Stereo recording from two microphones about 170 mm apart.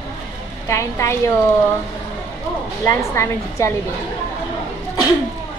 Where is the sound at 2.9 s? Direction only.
15° left (ahead or behind).